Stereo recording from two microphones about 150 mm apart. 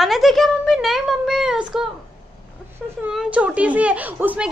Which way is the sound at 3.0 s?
5° right (ahead or behind).